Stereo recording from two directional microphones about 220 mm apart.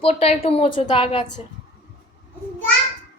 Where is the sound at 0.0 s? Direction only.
25° left (ahead or behind).